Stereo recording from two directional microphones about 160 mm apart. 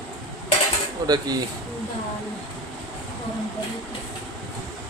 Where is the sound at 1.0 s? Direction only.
25° right (ahead or behind).